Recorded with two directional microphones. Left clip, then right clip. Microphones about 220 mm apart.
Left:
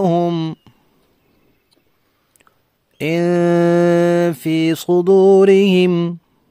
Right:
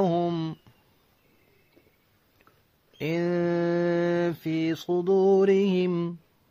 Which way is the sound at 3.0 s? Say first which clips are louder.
Left 11 dB; 50° left (ahead or behind).